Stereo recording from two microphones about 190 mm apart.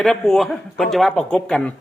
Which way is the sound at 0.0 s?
Centre (ahead or behind).